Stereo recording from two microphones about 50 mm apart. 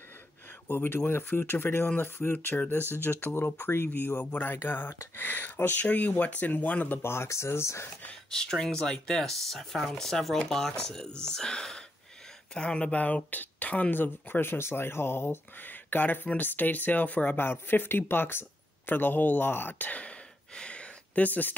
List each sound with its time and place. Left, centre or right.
0.7 s speech: left
2.3 s speech: left
2.9 s speech: left
3.9 s speech: left
4.3 s speech: left
7.0 s speech: left
8.1 s speech: centre; by 17.4 s left
17.4 s speech: left
19.9 s a sound: left